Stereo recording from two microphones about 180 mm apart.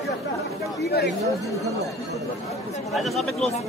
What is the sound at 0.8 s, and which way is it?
Speech, 65° left (ahead or behind).